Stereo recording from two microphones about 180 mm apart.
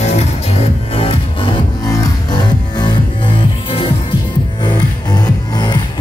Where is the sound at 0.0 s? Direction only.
35° left (ahead or behind).